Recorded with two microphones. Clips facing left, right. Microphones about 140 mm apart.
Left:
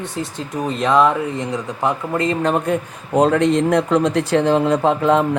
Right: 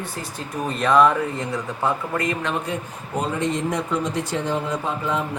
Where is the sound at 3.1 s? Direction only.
90° left.